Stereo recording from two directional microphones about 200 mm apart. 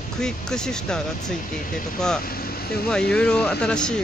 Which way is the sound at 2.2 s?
50° left (ahead or behind).